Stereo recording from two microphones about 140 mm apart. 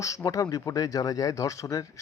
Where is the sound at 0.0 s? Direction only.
25° left (ahead or behind).